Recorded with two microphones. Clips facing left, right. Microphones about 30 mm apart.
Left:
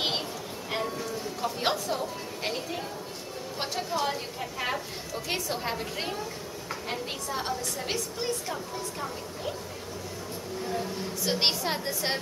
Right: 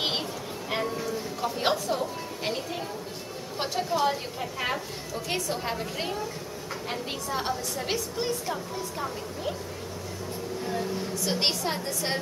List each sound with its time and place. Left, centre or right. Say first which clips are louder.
0.7 s a woman's voice: right 2 dB; centre
10.6 s a sound: even; centre
11.2 s a woman's voice: left 1 dB; centre